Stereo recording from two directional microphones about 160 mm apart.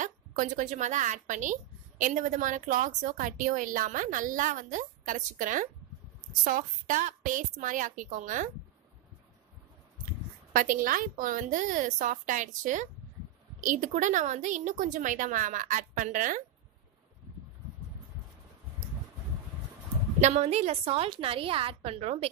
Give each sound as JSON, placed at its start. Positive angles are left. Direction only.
{"t": 0.0, "sound": "a woman's voice", "side_deg": -55}
{"t": 10.5, "sound": "a woman's voice", "side_deg": -60}
{"t": 20.2, "sound": "a woman's voice", "side_deg": -45}